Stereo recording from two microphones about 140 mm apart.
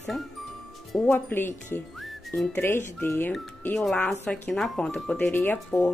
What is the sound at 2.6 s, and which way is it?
Speech, 15° left (ahead or behind).